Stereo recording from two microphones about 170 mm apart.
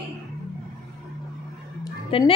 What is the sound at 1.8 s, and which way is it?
Music, 30° left (ahead or behind).